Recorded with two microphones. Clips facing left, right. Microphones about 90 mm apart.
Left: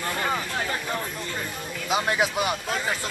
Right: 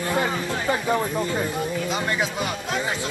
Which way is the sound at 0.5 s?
20° right (ahead or behind).